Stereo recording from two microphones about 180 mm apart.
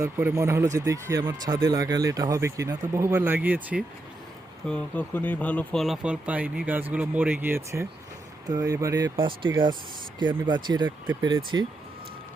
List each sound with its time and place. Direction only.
0.0 s speech: 15° right (ahead or behind)
4.6 s speech: 5° left (ahead or behind); by 11.6 s 25° right (ahead or behind)